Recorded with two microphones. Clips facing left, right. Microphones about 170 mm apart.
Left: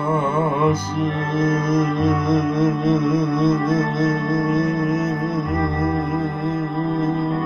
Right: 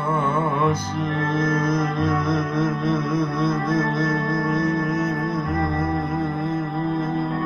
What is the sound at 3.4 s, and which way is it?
Music, 25° left (ahead or behind).